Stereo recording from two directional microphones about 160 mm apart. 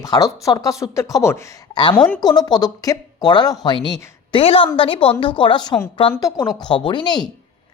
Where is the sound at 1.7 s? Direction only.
30° left (ahead or behind).